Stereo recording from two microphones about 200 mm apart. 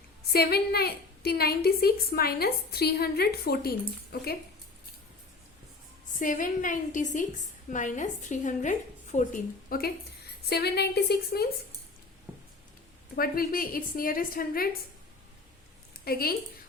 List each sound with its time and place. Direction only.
0.3 s a woman's voice: 50° left (ahead or behind)
6.1 s a woman's voice: 40° left (ahead or behind)
13.1 s a woman's voice: 45° left (ahead or behind)
16.0 s a woman's voice: 50° left (ahead or behind)